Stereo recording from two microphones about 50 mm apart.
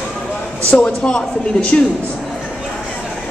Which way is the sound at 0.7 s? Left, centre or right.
Left.